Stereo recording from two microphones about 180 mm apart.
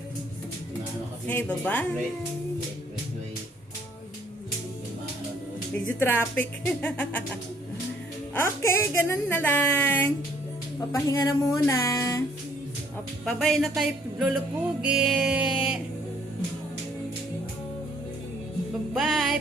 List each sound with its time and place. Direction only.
1.3 s a woman's voice: 10° left (ahead or behind)
6.0 s a woman's voice: 10° left (ahead or behind)
8.4 s a woman's voice: 15° left (ahead or behind)
13.2 s speech: centre (ahead or behind)
18.9 s speech: centre (ahead or behind)